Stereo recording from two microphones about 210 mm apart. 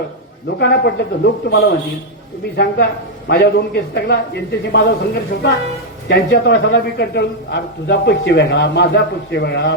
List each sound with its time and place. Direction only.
0.4 s a man's voice: 55° left (ahead or behind)
3.2 s a man's voice: 50° left (ahead or behind)